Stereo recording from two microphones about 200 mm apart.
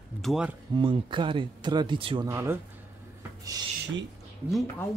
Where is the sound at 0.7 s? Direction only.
25° right (ahead or behind).